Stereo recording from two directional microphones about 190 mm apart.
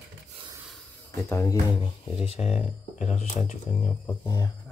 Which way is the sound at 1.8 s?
30° left (ahead or behind).